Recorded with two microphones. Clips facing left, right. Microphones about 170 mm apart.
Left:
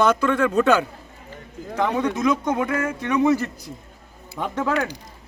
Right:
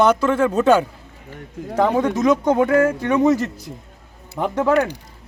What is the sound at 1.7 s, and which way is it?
Speech, 40° right (ahead or behind).